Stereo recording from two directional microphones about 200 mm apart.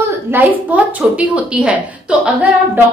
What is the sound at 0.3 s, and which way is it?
A woman's voice, 10° right (ahead or behind).